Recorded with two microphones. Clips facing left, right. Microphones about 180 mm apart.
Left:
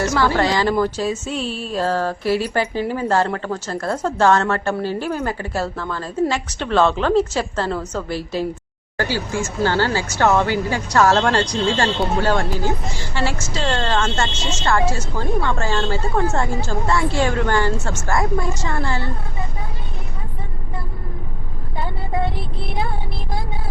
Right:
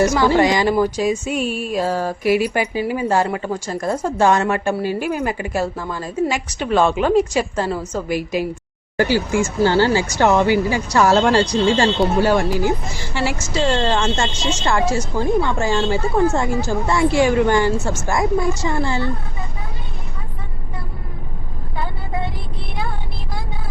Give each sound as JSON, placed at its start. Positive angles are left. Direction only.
{"t": 0.0, "sound": "speech", "side_deg": -15}